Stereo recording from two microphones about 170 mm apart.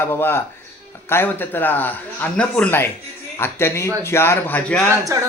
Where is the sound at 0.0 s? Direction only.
15° left (ahead or behind).